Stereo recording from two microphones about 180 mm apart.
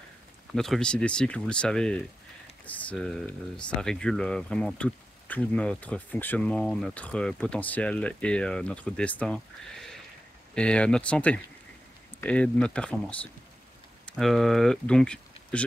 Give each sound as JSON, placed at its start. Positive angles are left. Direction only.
{"t": 0.5, "sound": "speech", "side_deg": 0}